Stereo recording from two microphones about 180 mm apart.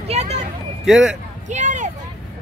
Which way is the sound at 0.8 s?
5° right (ahead or behind).